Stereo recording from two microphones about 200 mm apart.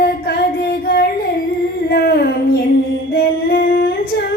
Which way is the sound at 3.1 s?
50° left (ahead or behind).